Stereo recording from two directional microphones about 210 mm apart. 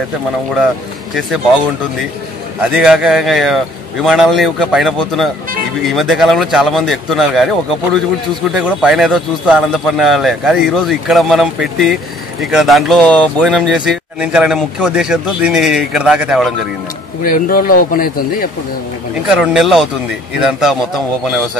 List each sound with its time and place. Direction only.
2.7 s a man's voice: 5° right (ahead or behind)
8.5 s a man's voice: centre (ahead or behind)
17.2 s speech: 40° left (ahead or behind)
19.2 s a man's voice: 5° right (ahead or behind)